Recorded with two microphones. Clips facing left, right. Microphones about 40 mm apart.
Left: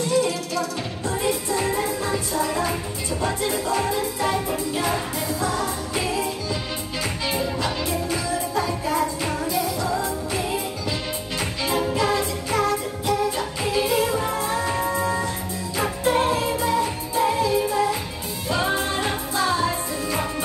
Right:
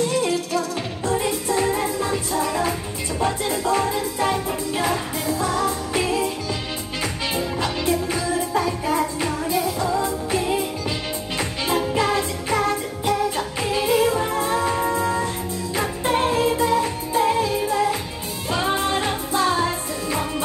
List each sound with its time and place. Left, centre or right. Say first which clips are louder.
0.6 s music: right 2 dB; centre
8.1 s music: right 2 dB; centre
11.9 s music: right 1 dB; right